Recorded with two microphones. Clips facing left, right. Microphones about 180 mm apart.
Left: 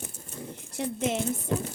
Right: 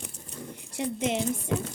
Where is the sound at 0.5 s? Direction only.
15° right (ahead or behind).